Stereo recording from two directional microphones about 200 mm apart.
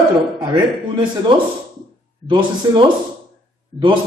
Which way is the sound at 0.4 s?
25° right (ahead or behind).